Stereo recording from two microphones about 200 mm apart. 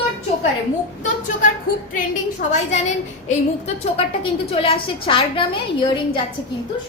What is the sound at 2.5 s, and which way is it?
A woman's voice, 35° left (ahead or behind).